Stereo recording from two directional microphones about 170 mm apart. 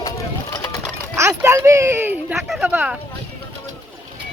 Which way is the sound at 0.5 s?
20° left (ahead or behind).